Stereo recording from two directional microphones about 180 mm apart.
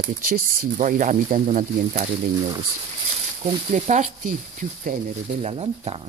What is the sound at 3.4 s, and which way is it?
Speech, 40° right (ahead or behind).